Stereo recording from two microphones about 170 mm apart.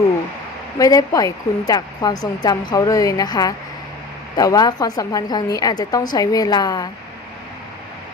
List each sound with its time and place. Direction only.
0.8 s a woman's voice: 20° left (ahead or behind)